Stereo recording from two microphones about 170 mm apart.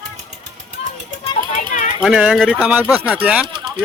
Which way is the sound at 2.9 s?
20° left (ahead or behind).